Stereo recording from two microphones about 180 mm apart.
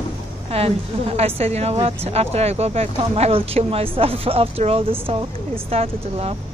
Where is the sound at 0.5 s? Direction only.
35° right (ahead or behind).